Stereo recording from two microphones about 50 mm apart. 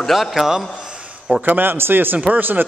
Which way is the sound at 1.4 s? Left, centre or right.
Right.